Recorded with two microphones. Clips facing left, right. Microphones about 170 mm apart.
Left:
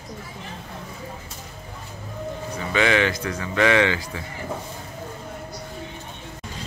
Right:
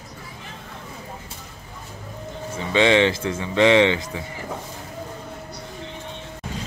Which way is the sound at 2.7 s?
25° right (ahead or behind).